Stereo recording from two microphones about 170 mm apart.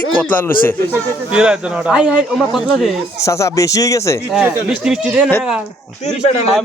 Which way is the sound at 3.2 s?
20° left (ahead or behind).